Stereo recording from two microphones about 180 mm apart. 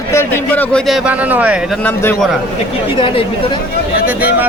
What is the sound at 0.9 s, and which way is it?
Speech, 5° right (ahead or behind).